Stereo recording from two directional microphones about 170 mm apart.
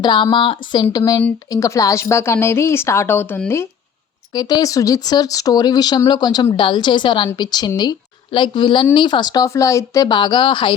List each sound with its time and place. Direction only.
0.0 s a woman's voice: 25° left (ahead or behind); by 3.7 s 10° left (ahead or behind)
4.4 s a woman's voice: 25° left (ahead or behind)